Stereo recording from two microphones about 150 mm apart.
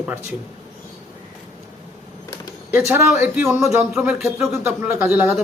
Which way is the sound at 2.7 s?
15° right (ahead or behind).